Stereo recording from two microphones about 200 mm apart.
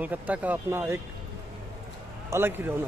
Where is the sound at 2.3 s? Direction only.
10° right (ahead or behind).